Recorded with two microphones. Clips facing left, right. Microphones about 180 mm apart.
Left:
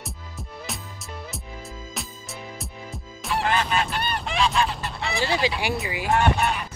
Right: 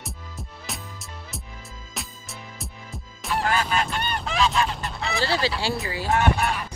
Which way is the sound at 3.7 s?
5° left (ahead or behind).